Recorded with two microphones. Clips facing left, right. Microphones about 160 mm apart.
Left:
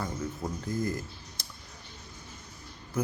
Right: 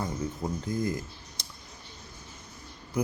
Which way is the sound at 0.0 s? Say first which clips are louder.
Right 2 dB; 15° right (ahead or behind).